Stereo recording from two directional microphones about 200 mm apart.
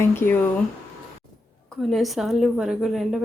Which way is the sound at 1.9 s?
Centre (ahead or behind).